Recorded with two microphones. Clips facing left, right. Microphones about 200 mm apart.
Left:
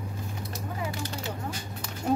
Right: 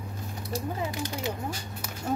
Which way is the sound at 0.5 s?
15° right (ahead or behind).